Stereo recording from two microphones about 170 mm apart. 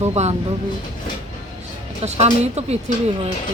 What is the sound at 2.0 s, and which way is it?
Speech, 40° right (ahead or behind).